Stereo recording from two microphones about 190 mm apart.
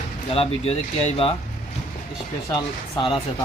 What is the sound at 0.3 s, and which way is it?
Speech, 30° left (ahead or behind).